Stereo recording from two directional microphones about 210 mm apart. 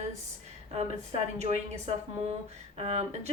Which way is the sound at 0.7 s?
30° right (ahead or behind).